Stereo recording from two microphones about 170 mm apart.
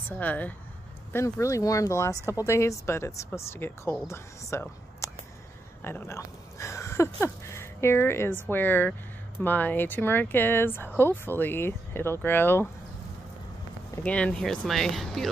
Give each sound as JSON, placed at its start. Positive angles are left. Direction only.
{"t": 0.2, "sound": "speech", "side_deg": 10}
{"t": 14.0, "sound": "speech", "side_deg": 5}